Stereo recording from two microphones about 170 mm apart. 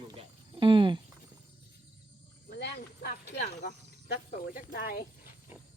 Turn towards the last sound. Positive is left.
turn(degrees=55)  # may be behind; listen again after turning